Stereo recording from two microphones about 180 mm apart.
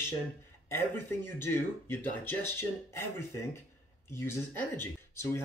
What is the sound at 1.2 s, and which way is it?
Speech, 15° left (ahead or behind).